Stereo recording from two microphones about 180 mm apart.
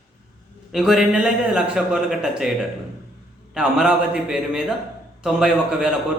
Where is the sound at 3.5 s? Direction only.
5° right (ahead or behind).